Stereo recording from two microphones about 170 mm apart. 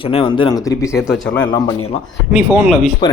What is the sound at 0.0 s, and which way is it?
Speech, 30° left (ahead or behind).